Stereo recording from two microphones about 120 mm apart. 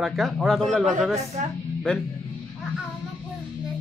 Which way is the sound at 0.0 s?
5° right (ahead or behind).